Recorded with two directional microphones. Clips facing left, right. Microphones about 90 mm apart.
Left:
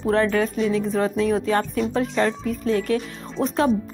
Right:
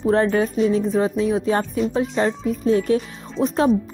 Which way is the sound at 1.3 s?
15° right (ahead or behind).